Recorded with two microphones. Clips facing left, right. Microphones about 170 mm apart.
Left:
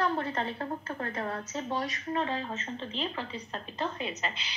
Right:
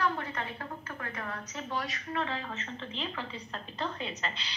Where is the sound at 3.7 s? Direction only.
15° left (ahead or behind).